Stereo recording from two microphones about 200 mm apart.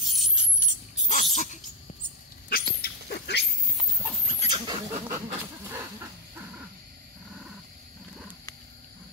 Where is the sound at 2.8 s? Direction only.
50° left (ahead or behind).